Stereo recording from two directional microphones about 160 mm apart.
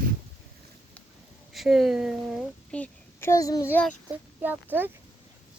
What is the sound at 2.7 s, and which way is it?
A child's voice, 10° left (ahead or behind).